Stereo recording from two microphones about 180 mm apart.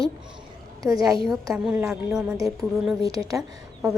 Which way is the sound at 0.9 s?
20° right (ahead or behind).